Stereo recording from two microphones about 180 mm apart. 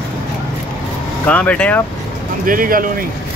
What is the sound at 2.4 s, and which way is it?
Speech, 50° right (ahead or behind).